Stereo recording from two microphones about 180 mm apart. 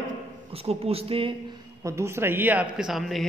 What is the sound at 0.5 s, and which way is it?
Speech, 35° right (ahead or behind).